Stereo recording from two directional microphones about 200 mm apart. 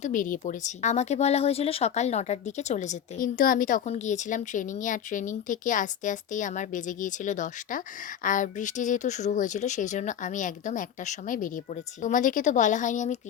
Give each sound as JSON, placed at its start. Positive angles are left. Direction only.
{"t": 0.0, "sound": "speech", "side_deg": 40}